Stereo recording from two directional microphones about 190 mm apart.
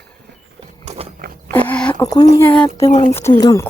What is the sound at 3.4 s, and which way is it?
Speech, 20° left (ahead or behind).